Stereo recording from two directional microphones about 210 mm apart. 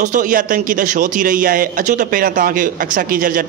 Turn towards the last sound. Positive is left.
turn(degrees=-40)  # may be behind; listen again after turning